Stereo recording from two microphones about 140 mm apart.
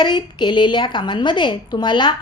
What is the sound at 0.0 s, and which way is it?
A woman's voice, 35° left (ahead or behind).